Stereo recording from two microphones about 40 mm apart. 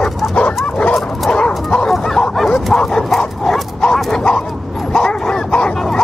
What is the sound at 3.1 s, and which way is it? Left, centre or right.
Dog, centre.